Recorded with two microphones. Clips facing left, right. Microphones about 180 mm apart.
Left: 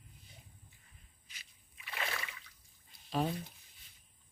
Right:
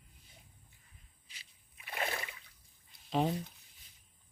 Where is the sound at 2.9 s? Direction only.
20° right (ahead or behind).